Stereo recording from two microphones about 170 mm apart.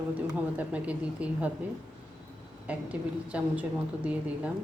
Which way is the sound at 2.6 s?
5° right (ahead or behind).